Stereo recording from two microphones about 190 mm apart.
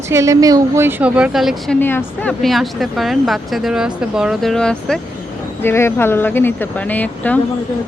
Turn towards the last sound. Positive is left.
turn(degrees=10)  # may be behind; listen again after turning